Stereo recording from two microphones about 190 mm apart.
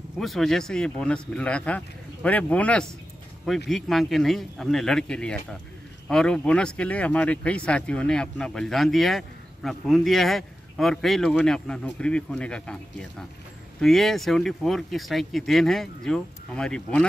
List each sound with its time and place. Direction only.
0.2 s speech: centre (ahead or behind)
13.7 s speech: centre (ahead or behind)